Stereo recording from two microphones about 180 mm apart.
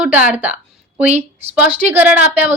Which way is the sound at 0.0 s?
10° right (ahead or behind).